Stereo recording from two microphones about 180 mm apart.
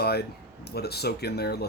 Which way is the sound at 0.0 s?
60° left (ahead or behind).